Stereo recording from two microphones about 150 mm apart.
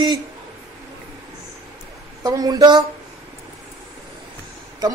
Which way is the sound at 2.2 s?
25° right (ahead or behind).